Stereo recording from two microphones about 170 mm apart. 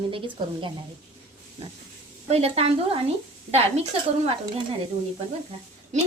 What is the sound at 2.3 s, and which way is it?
Speech, 35° right (ahead or behind).